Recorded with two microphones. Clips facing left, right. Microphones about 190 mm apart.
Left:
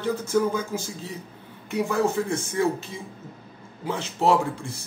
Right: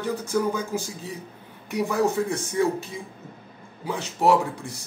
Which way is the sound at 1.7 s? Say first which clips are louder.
Even; 15° right (ahead or behind).